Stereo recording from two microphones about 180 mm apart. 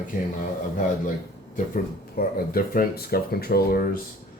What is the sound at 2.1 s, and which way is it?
Speech, 55° left (ahead or behind).